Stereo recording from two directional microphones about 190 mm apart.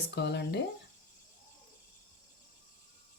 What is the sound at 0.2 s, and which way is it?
Speech, 65° left (ahead or behind).